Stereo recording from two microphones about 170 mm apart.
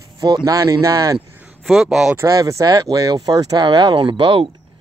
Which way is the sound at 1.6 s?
Centre (ahead or behind).